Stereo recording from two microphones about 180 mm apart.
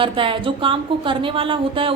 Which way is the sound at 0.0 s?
30° right (ahead or behind).